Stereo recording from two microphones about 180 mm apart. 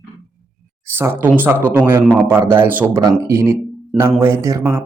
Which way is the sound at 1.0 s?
10° right (ahead or behind).